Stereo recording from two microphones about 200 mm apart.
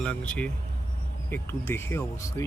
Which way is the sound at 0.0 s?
5° left (ahead or behind).